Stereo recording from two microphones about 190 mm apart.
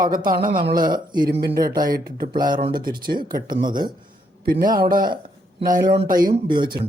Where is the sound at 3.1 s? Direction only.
25° right (ahead or behind).